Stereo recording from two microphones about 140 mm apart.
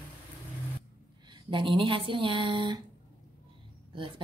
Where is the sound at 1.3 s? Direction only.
35° right (ahead or behind).